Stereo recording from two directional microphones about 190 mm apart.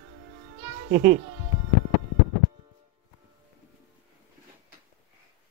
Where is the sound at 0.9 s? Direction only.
40° right (ahead or behind).